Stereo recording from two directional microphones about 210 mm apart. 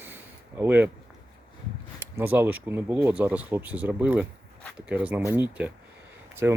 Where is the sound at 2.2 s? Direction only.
10° right (ahead or behind).